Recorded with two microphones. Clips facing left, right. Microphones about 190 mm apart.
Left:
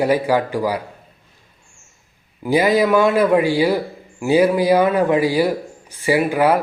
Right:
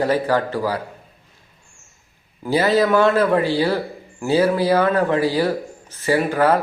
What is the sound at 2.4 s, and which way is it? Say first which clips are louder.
A man's voice: left 2 dB; 15° left (ahead or behind).